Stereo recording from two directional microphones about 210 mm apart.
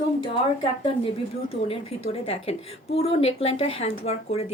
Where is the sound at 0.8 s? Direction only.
25° left (ahead or behind).